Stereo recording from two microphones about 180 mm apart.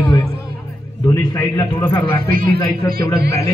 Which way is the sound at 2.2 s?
55° right (ahead or behind).